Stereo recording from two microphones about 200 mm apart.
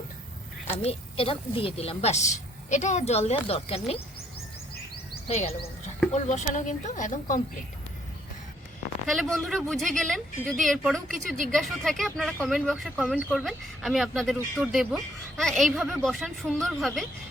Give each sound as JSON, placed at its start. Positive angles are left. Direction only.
{"t": 0.8, "sound": "a woman's voice", "side_deg": 30}
{"t": 3.4, "sound": "frog", "side_deg": 30}
{"t": 5.3, "sound": "a woman's voice", "side_deg": 30}
{"t": 9.1, "sound": "speech", "side_deg": 0}